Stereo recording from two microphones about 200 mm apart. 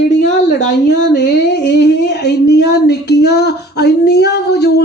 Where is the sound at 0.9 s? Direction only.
60° left (ahead or behind).